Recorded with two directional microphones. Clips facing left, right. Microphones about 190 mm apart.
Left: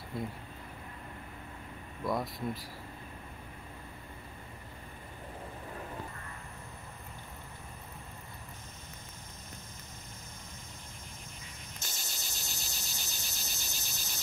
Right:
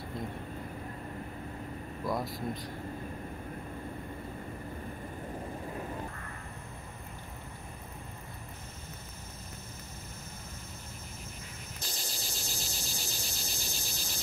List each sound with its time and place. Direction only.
2.0 s speech: centre (ahead or behind)
11.9 s cricket: centre (ahead or behind)